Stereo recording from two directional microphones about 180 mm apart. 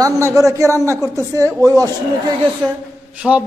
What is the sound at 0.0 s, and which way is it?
A woman's voice, 15° right (ahead or behind).